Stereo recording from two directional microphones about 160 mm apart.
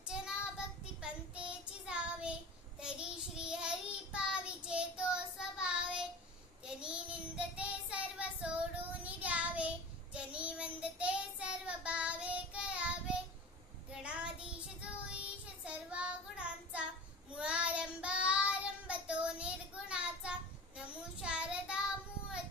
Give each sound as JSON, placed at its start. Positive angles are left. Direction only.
{"t": 0.0, "sound": "child singing", "side_deg": -5}